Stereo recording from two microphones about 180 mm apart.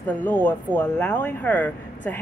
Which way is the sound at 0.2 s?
10° left (ahead or behind).